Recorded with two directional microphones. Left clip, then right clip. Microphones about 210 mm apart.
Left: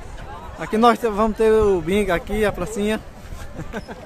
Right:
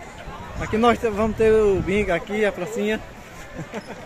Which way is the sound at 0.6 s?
15° left (ahead or behind).